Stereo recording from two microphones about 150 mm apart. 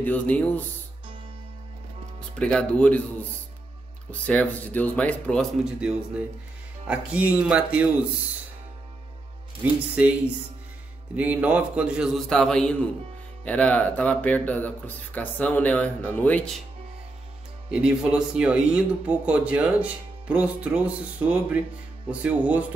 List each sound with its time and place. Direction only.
0.0 s speech: 10° left (ahead or behind)
2.1 s speech: 5° left (ahead or behind)
5.8 s speech: 5° right (ahead or behind)
9.9 s a man's voice: 10° right (ahead or behind); by 16.5 s 10° left (ahead or behind)
17.6 s speech: 5° right (ahead or behind)